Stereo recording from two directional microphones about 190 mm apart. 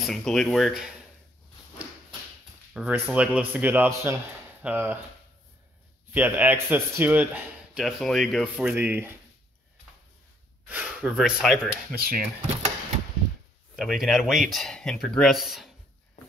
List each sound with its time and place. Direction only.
0.0 s speech: centre (ahead or behind)
2.7 s a man's voice: 5° right (ahead or behind)
6.1 s a man's voice: 10° right (ahead or behind)
10.7 s speech: 5° right (ahead or behind)
12.0 s speech: 50° right (ahead or behind)
13.7 s speech: centre (ahead or behind)